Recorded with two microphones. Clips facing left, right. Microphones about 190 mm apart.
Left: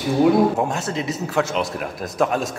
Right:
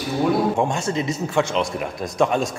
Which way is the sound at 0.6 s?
Centre (ahead or behind).